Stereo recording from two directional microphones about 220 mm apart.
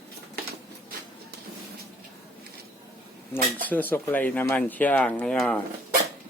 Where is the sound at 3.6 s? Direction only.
10° left (ahead or behind).